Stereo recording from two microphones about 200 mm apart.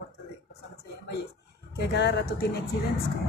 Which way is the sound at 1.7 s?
55° left (ahead or behind).